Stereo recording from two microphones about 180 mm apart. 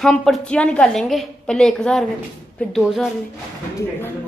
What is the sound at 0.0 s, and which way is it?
A woman's voice, centre (ahead or behind).